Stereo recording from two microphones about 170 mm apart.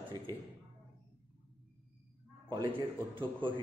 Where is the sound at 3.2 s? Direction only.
30° right (ahead or behind).